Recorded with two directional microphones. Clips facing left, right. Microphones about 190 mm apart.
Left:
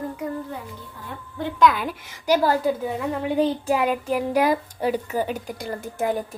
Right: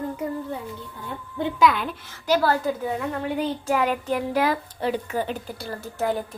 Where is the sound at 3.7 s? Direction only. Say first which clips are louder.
Left 1 dB; 15° left (ahead or behind).